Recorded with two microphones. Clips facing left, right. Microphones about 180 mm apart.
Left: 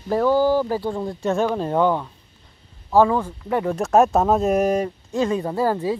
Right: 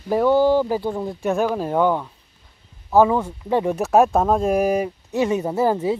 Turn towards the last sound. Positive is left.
turn(degrees=-20)  # may be behind; listen again after turning